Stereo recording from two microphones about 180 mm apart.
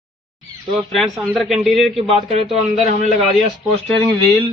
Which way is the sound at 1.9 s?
35° right (ahead or behind).